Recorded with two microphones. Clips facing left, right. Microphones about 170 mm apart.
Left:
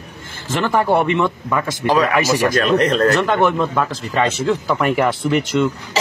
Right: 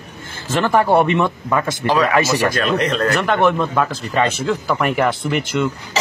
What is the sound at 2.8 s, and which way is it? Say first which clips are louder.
Speech: left 3 dB; 40° left (ahead or behind).